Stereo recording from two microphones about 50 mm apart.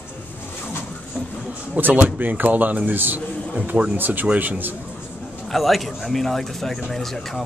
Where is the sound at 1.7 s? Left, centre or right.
Right.